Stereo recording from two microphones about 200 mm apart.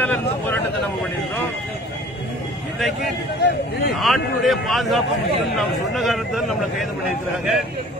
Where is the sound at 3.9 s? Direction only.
Centre (ahead or behind).